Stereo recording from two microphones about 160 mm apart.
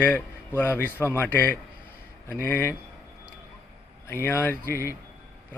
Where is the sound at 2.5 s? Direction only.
15° left (ahead or behind).